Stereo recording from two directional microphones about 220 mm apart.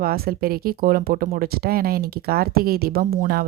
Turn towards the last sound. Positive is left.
turn(degrees=-40)  # may be behind; listen again after turning